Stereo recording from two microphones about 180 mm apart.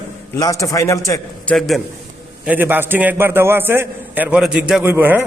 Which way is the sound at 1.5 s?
Centre (ahead or behind).